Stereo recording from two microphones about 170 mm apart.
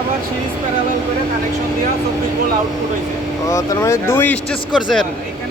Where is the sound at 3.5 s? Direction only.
20° left (ahead or behind).